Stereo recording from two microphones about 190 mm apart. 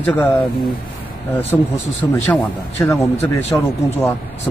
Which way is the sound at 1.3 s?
10° left (ahead or behind).